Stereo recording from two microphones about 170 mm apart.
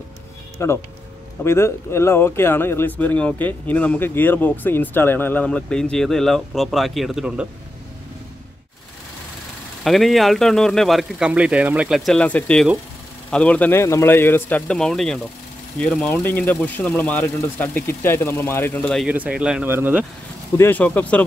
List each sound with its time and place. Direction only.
0.6 s speech: 15° left (ahead or behind); by 7.4 s 5° right (ahead or behind)
9.8 s a man's voice: centre (ahead or behind)
19.0 s speech: 5° right (ahead or behind)
20.5 s speech: 10° left (ahead or behind)